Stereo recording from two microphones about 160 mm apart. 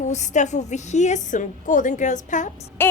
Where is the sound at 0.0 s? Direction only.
45° left (ahead or behind).